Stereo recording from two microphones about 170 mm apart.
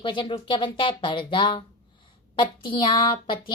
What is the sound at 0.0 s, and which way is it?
A child's voice, 30° left (ahead or behind).